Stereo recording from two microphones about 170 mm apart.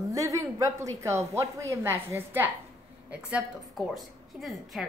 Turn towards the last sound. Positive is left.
turn(degrees=0)  # may be behind; listen again after turning